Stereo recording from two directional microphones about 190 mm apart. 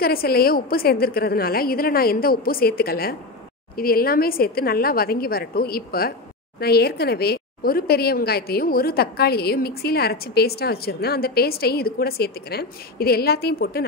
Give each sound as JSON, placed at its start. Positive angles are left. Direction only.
{"t": 0.0, "sound": "a woman's voice", "side_deg": 55}